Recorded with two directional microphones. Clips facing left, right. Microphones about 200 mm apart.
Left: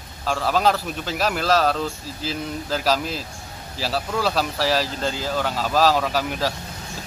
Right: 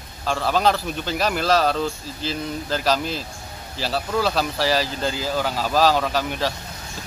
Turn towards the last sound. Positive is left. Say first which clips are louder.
# even
turn(degrees=5)  # may be behind; listen again after turning